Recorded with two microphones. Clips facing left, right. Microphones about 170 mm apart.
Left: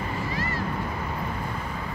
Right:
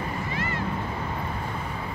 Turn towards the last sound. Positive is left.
turn(degrees=35)  # may be behind; listen again after turning